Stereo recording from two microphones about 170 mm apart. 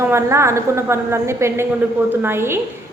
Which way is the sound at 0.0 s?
15° right (ahead or behind).